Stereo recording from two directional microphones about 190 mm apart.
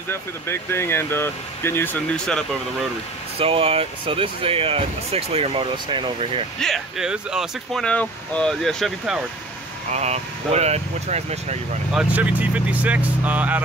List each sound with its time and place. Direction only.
0.1 s speech: 10° left (ahead or behind)
3.3 s speech: 30° right (ahead or behind)
6.6 s speech: centre (ahead or behind)
9.8 s speech: 35° right (ahead or behind)
11.9 s speech: 5° right (ahead or behind)